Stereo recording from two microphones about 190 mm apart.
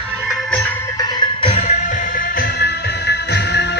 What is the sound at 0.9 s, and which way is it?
Music, 25° left (ahead or behind).